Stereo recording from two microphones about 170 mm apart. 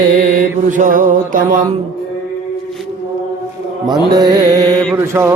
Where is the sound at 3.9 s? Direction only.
25° right (ahead or behind).